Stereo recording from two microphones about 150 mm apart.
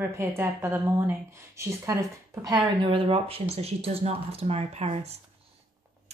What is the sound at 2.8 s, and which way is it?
Speech, 40° right (ahead or behind).